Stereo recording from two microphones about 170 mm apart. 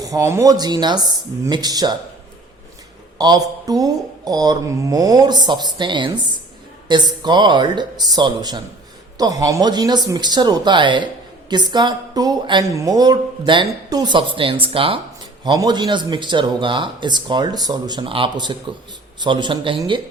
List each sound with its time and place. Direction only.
0.0 s speech: 20° right (ahead or behind)
3.2 s speech: 25° right (ahead or behind)